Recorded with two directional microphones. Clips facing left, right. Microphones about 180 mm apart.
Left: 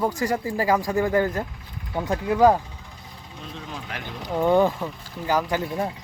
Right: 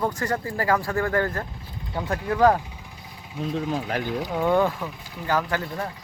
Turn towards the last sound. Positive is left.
turn(degrees=20)  # may be behind; listen again after turning